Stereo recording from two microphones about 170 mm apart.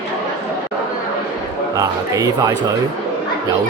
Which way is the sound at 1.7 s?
20° right (ahead or behind).